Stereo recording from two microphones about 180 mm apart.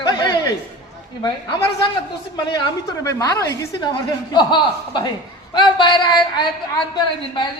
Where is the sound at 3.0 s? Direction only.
15° left (ahead or behind).